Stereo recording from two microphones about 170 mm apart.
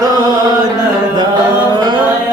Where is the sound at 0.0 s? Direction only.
25° right (ahead or behind).